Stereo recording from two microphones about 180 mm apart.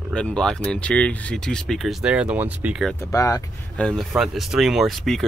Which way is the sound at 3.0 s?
20° left (ahead or behind).